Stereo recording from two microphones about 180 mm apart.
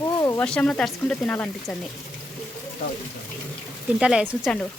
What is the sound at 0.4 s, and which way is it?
Speech, 5° left (ahead or behind).